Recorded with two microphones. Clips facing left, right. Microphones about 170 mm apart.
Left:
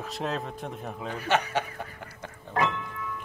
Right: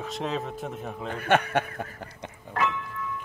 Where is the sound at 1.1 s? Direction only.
55° right (ahead or behind).